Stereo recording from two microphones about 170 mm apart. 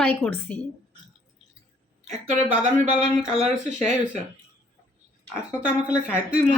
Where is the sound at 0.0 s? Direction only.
10° left (ahead or behind).